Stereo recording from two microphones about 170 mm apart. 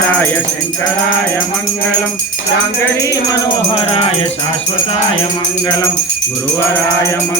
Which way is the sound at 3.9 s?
35° left (ahead or behind).